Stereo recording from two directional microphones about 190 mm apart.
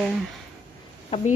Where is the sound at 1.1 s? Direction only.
30° left (ahead or behind).